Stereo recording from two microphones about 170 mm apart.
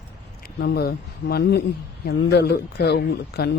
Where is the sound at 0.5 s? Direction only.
70° left (ahead or behind).